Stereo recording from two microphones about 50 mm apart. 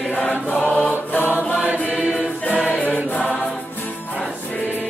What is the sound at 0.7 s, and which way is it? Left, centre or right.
Mantra, left.